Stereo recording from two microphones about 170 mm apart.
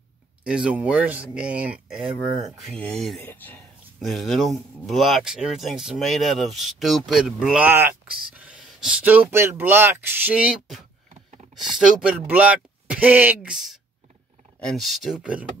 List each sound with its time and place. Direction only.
0.4 s speech: 5° right (ahead or behind); by 3.6 s 10° left (ahead or behind)
4.0 s speech: centre (ahead or behind)